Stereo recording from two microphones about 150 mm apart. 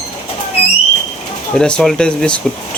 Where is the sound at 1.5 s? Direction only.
5° left (ahead or behind).